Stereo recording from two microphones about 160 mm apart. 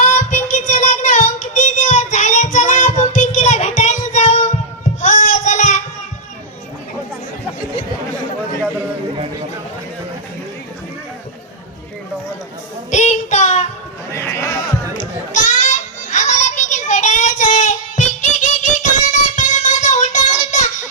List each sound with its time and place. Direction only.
0.0 s child singing: 50° left (ahead or behind)
4.9 s a sound: 50° left (ahead or behind)
12.9 s child singing: 50° left (ahead or behind)
14.1 s sheep: 15° left (ahead or behind)
15.3 s child singing: 55° left (ahead or behind)